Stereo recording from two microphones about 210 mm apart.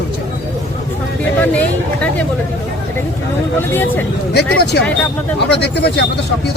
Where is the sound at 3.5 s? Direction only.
10° left (ahead or behind).